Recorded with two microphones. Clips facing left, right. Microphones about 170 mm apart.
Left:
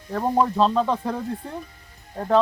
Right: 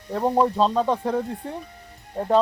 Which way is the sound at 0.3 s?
15° right (ahead or behind).